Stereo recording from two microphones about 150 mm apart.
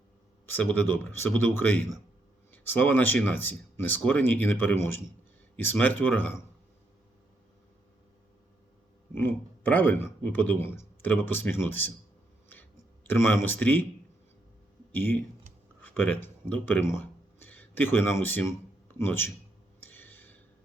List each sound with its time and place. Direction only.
0.4 s speech: 15° left (ahead or behind)
9.1 s speech: 10° left (ahead or behind)
13.1 s speech: 15° left (ahead or behind)
14.9 s speech: 15° left (ahead or behind)
19.8 s a sound: 15° left (ahead or behind)